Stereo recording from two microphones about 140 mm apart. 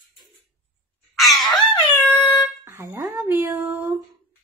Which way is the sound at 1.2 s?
Centre (ahead or behind).